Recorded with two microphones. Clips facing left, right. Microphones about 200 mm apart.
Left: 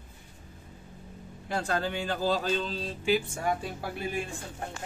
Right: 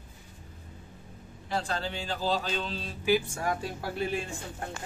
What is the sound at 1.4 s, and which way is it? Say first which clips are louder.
Speech: left 2 dB; 55° left (ahead or behind).